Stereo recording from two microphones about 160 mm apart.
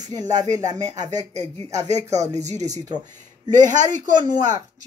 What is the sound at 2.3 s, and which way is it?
Speech, 45° right (ahead or behind).